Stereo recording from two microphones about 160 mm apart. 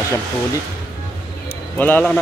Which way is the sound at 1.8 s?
10° left (ahead or behind).